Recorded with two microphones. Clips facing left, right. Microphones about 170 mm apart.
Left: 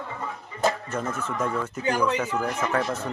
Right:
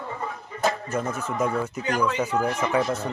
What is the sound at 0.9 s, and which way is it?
Speech, 10° right (ahead or behind).